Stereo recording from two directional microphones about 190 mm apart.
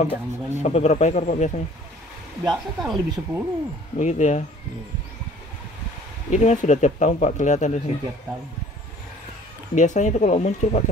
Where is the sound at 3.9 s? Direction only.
35° left (ahead or behind).